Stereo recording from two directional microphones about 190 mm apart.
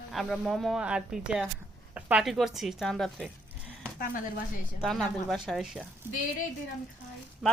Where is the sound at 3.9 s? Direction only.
45° left (ahead or behind).